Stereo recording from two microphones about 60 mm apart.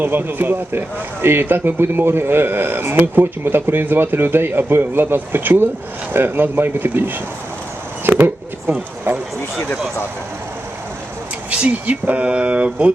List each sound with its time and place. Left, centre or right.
0.0 s speech: right
9.1 s speech: right
11.5 s speech: centre